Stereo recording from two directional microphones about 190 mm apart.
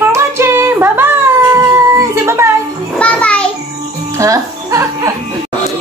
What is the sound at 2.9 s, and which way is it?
Music, 5° left (ahead or behind).